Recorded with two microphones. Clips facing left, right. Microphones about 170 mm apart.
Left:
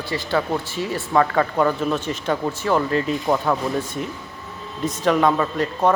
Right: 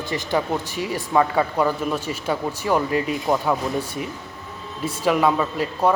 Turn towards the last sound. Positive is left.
turn(degrees=-10)  # may be behind; listen again after turning